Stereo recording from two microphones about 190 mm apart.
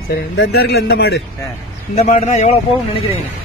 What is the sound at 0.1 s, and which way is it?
A man's voice, 55° left (ahead or behind).